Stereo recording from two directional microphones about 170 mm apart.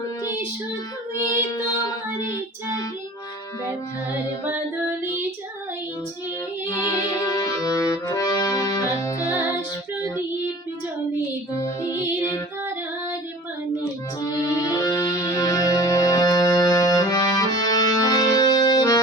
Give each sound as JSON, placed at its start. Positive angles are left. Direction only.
{"t": 1.6, "sound": "music", "side_deg": 20}
{"t": 6.7, "sound": "accordion", "side_deg": 20}
{"t": 11.5, "sound": "music", "side_deg": 20}
{"t": 14.3, "sound": "music", "side_deg": 20}